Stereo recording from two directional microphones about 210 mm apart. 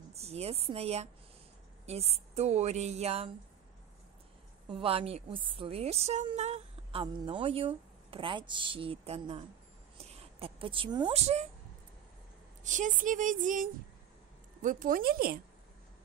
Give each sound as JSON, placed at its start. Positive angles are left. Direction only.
{"t": 0.1, "sound": "a woman's voice", "side_deg": -30}
{"t": 4.6, "sound": "a woman's voice", "side_deg": -25}
{"t": 10.4, "sound": "a woman's voice", "side_deg": -25}
{"t": 12.6, "sound": "a woman's voice", "side_deg": -35}